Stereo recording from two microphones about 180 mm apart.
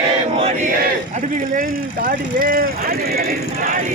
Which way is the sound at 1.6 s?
55° right (ahead or behind).